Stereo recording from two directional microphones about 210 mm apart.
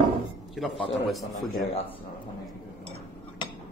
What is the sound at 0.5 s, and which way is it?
Speech, centre (ahead or behind).